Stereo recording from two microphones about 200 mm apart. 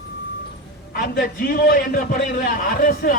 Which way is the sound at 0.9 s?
45° left (ahead or behind).